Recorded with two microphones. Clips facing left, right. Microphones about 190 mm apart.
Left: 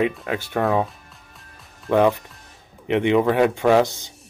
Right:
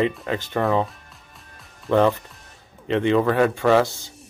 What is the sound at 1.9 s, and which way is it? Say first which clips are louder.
Speech: left 1 dB; 15° left (ahead or behind).